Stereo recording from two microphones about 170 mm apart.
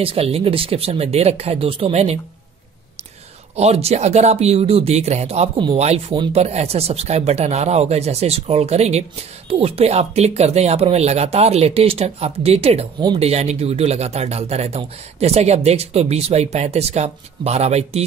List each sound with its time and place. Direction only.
0.0 s speech: 35° right (ahead or behind)
3.5 s speech: 40° right (ahead or behind)